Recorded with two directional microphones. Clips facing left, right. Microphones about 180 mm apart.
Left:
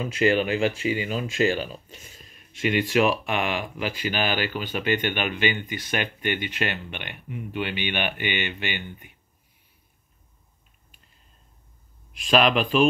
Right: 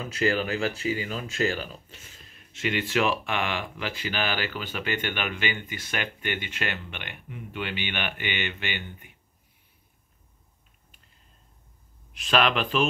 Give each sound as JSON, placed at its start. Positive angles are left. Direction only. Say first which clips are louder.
{"t": 0.2, "sound": "speech", "louder": "left 4 dB", "side_deg": 20}
{"t": 12.2, "sound": "speech", "louder": "left 4 dB", "side_deg": 15}